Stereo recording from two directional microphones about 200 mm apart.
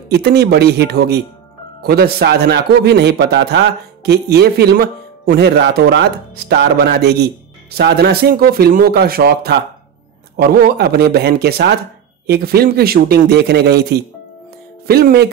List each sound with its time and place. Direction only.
0.1 s a man's voice: 55° right (ahead or behind)